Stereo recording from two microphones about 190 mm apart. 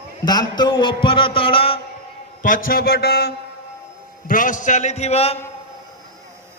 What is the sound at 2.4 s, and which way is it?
Speech, 45° left (ahead or behind).